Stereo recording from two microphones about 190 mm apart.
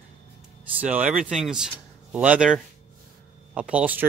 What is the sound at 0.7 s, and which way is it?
Speech, 5° right (ahead or behind).